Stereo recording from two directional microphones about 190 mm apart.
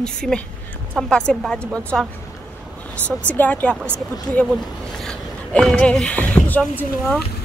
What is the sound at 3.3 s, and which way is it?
Speech, 10° left (ahead or behind).